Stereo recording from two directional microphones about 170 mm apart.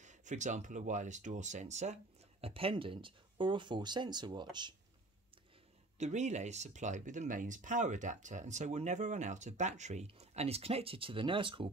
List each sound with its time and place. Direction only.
0.0 s speech: 45° right (ahead or behind); by 4.7 s 25° right (ahead or behind)
5.9 s speech: 45° right (ahead or behind)